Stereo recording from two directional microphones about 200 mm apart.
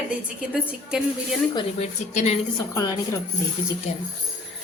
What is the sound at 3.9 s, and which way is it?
Speech, 30° left (ahead or behind).